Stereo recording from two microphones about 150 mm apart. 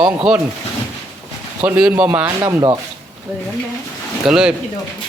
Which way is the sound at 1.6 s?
10° right (ahead or behind).